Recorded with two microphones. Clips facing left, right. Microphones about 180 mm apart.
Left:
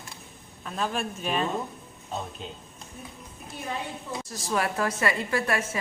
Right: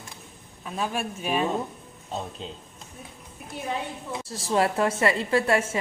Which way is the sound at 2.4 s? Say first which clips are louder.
Right 2 dB; 30° right (ahead or behind).